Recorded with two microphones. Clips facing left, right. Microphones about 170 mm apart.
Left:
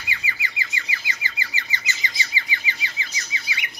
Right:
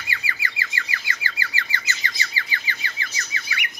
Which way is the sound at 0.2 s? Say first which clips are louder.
Right 1 dB; 20° left (ahead or behind).